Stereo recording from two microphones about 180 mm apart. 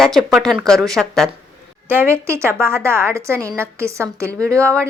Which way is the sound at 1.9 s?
15° right (ahead or behind).